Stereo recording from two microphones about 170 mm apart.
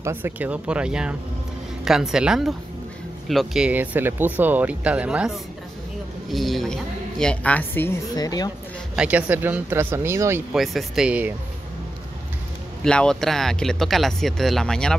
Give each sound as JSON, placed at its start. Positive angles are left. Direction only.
{"t": 0.0, "sound": "speech", "side_deg": -10}
{"t": 8.2, "sound": "speech", "side_deg": 20}
{"t": 8.9, "sound": "speech", "side_deg": -10}
{"t": 10.5, "sound": "speech", "side_deg": 0}
{"t": 12.8, "sound": "speech", "side_deg": 5}